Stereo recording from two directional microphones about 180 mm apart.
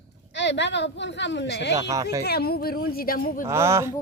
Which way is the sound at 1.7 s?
20° right (ahead or behind).